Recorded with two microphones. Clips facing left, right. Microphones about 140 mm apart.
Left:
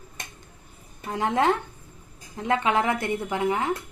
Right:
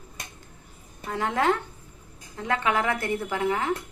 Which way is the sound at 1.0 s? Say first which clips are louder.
Left 2 dB; 20° left (ahead or behind).